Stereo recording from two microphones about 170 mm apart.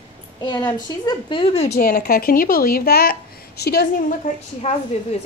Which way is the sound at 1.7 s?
65° left (ahead or behind).